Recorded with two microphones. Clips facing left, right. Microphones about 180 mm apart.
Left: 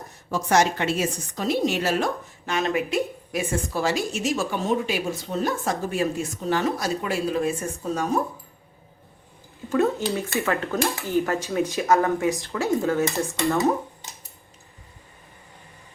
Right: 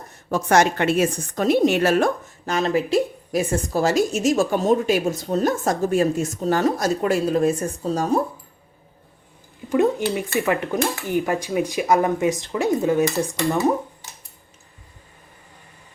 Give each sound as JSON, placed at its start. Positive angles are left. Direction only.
{"t": 0.3, "sound": "a woman's voice", "side_deg": -55}
{"t": 2.5, "sound": "a woman's voice", "side_deg": -35}
{"t": 9.6, "sound": "speech", "side_deg": -15}